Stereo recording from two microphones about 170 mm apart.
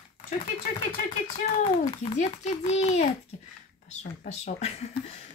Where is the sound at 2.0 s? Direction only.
40° left (ahead or behind).